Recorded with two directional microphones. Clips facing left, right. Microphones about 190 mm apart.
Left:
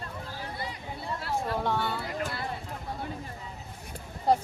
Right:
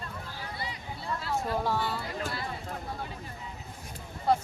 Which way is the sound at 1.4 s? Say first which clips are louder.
Even; centre (ahead or behind).